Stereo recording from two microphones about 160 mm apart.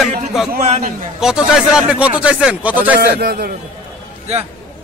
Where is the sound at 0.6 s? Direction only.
45° right (ahead or behind).